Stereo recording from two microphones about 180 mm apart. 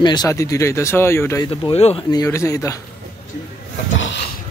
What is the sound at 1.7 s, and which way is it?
Speech, 35° left (ahead or behind).